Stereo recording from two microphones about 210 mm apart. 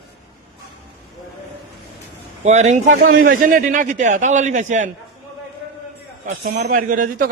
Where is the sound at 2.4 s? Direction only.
35° right (ahead or behind).